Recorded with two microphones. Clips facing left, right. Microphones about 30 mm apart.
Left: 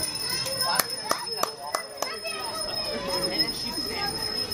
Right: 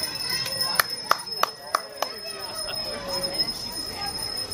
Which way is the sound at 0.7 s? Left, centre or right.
Right.